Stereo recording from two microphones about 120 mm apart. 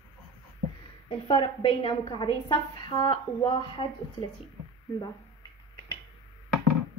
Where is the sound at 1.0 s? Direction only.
50° left (ahead or behind).